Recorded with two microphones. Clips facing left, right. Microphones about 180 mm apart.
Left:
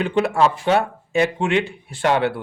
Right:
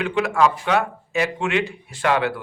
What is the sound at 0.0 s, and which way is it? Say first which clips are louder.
A man's voice: left 1 dB; 35° left (ahead or behind).